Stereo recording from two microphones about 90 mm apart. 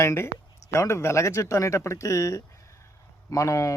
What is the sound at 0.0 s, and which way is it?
Speech, 30° left (ahead or behind).